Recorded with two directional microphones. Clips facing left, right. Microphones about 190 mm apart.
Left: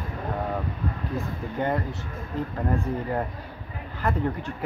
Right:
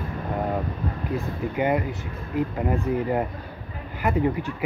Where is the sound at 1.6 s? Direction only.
10° right (ahead or behind).